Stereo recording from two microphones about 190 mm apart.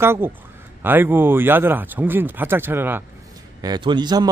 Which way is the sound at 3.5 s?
20° right (ahead or behind).